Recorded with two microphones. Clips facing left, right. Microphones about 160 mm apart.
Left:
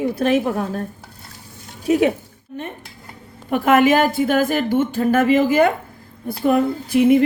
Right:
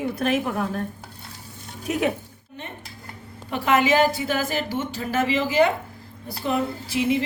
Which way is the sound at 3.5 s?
50° left (ahead or behind).